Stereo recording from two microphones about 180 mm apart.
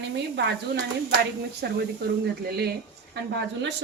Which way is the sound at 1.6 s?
65° right (ahead or behind).